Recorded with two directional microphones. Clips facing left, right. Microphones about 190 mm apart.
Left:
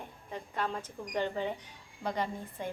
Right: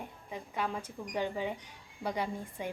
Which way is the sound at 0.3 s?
10° right (ahead or behind).